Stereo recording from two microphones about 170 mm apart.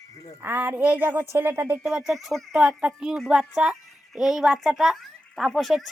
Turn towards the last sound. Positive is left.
turn(degrees=0)  # may be behind; listen again after turning